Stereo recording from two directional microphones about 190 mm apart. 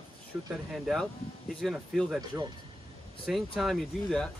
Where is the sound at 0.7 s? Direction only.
Centre (ahead or behind).